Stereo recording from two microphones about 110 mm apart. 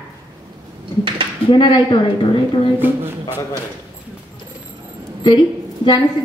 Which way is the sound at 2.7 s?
20° right (ahead or behind).